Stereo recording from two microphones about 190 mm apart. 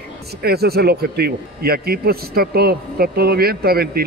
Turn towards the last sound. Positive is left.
turn(degrees=-55)  # may be behind; listen again after turning